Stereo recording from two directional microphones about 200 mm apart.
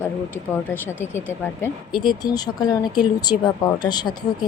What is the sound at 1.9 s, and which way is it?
Speech, 20° left (ahead or behind).